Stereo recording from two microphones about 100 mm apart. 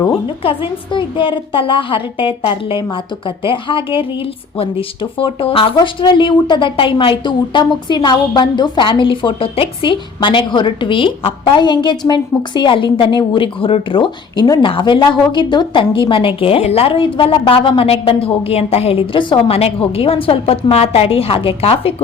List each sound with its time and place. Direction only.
0.4 s a woman's voice: 60° left (ahead or behind)
5.7 s a woman's voice: 50° left (ahead or behind)
19.5 s a woman's voice: 80° left